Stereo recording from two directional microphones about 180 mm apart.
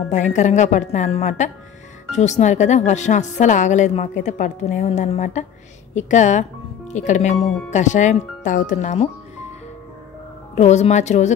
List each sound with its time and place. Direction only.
0.1 s speech: 40° left (ahead or behind)
10.5 s speech: 40° left (ahead or behind)